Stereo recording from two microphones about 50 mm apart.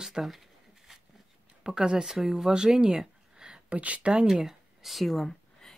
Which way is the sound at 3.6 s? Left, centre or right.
Right.